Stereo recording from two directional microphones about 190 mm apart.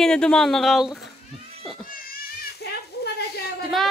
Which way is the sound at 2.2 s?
60° left (ahead or behind).